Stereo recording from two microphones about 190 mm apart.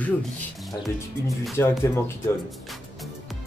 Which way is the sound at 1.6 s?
10° left (ahead or behind).